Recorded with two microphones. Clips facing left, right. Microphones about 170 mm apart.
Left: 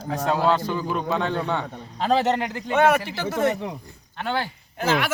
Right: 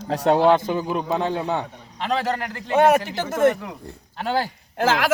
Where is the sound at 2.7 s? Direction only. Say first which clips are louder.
Right 3 dB; 45° right (ahead or behind).